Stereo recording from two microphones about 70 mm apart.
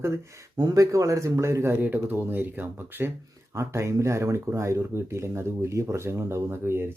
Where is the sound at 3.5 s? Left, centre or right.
Right.